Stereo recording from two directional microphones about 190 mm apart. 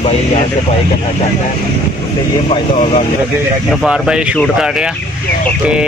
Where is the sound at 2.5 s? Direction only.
40° left (ahead or behind).